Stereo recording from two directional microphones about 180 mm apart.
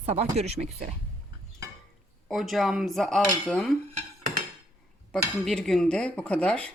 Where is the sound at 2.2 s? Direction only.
Centre (ahead or behind).